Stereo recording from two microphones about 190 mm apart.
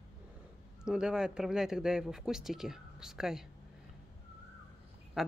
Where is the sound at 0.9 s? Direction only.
5° right (ahead or behind).